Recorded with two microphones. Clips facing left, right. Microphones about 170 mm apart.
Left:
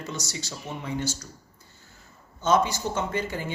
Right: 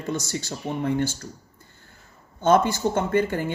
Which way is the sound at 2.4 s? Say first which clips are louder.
Right 4 dB; 55° right (ahead or behind).